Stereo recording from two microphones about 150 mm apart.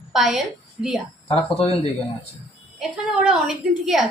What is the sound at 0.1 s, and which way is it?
Speech, centre (ahead or behind).